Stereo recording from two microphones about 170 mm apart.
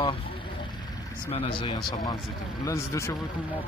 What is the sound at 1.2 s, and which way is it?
Speech, 30° left (ahead or behind).